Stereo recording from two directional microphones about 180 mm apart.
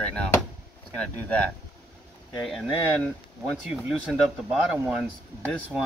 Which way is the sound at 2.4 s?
Centre (ahead or behind).